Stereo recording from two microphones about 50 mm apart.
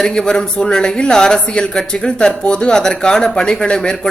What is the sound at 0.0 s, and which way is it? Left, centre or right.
A man's voice, centre.